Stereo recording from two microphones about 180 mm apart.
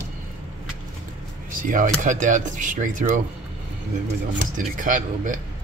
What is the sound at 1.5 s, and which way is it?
Speech, 50° right (ahead or behind).